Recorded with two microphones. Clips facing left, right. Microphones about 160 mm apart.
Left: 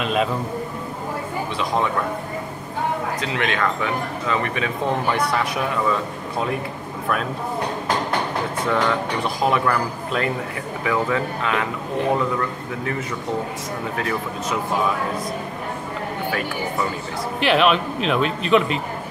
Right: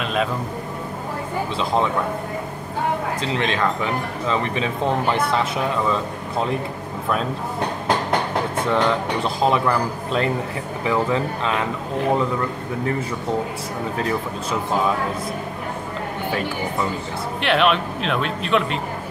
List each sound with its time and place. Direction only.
0.0 s a sound: centre (ahead or behind)
3.2 s a man's voice: 30° right (ahead or behind)
5.1 s a man's voice: 25° right (ahead or behind)
8.7 s a man's voice: 25° right (ahead or behind)
17.4 s speech: centre (ahead or behind)